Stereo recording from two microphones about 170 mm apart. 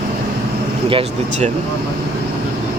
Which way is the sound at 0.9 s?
35° right (ahead or behind).